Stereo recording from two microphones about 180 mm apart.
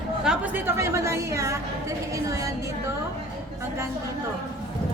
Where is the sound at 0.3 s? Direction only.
15° right (ahead or behind).